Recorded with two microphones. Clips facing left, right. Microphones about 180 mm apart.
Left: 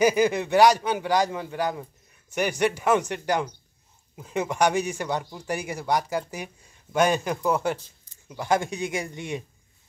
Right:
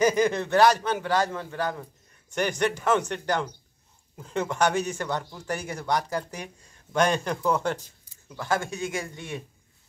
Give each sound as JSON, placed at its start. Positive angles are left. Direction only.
{"t": 0.0, "sound": "a man's voice", "side_deg": 10}